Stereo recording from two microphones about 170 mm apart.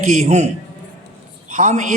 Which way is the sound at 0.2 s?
45° right (ahead or behind).